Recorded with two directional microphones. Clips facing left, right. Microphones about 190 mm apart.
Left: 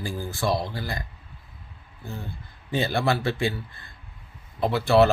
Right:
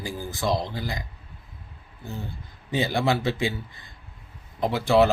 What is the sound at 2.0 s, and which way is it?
Speech, 15° right (ahead or behind).